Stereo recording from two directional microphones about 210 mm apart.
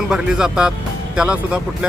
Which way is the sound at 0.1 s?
5° right (ahead or behind).